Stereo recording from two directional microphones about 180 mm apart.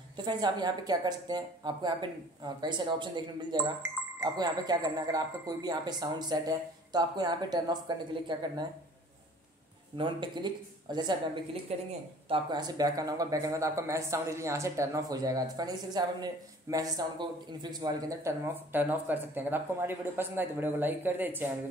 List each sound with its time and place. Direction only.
0.2 s speech: 25° right (ahead or behind)
9.9 s speech: 25° right (ahead or behind)
11.7 s a woman's voice: 35° right (ahead or behind)
12.3 s a man's voice: 25° right (ahead or behind)